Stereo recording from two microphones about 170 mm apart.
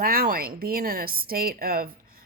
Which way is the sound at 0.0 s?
60° right (ahead or behind).